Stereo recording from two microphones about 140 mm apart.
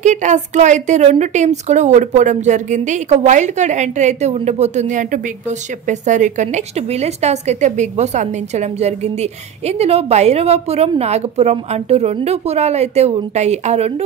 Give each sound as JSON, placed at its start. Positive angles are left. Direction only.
{"t": 0.0, "sound": "a woman's voice", "side_deg": -60}